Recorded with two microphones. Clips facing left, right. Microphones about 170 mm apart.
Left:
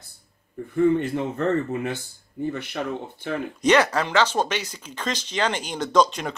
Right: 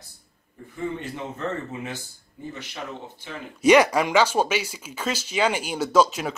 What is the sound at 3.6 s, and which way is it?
Speech, 10° right (ahead or behind).